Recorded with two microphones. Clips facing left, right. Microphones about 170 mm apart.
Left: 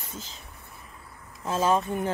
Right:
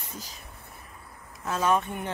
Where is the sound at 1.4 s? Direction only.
30° left (ahead or behind).